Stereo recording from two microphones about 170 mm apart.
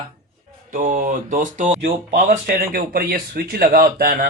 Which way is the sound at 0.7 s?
50° right (ahead or behind).